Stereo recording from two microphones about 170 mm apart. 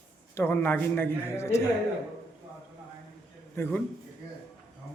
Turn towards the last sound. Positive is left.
turn(degrees=10)  # may be behind; listen again after turning